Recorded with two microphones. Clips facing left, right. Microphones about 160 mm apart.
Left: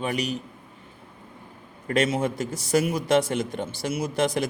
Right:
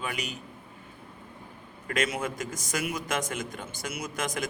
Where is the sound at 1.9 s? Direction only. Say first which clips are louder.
Left 6 dB; 30° left (ahead or behind).